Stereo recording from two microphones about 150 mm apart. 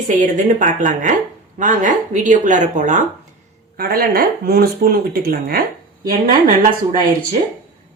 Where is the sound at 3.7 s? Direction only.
80° right.